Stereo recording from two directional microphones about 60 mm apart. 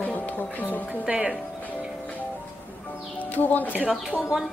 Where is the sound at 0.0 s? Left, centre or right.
Left.